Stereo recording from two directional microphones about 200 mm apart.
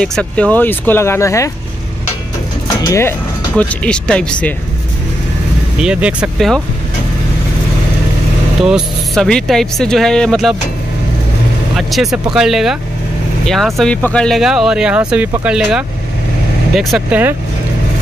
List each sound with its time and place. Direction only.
0.0 s speech: 5° left (ahead or behind)
2.8 s speech: 15° left (ahead or behind)
5.8 s speech: 5° right (ahead or behind)
8.6 s speech: centre (ahead or behind)
11.7 s speech: centre (ahead or behind)